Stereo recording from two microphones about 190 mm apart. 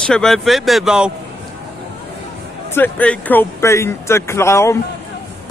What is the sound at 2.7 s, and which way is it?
Speech, 10° left (ahead or behind).